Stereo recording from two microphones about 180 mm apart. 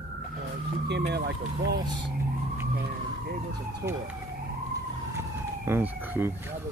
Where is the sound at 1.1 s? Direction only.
70° right (ahead or behind).